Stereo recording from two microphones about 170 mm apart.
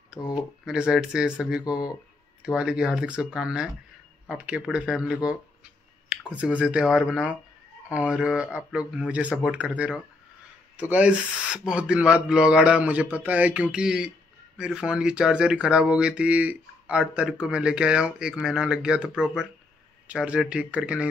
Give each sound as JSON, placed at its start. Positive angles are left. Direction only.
{"t": 0.3, "sound": "speech", "side_deg": -5}